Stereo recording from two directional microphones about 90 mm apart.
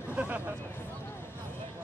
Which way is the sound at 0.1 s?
15° right (ahead or behind).